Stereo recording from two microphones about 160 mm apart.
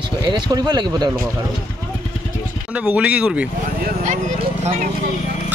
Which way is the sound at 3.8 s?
70° right (ahead or behind).